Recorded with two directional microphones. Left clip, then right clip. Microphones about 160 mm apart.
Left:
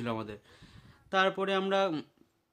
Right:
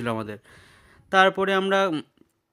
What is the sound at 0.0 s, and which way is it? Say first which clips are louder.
Speech: right 7 dB; 40° right (ahead or behind).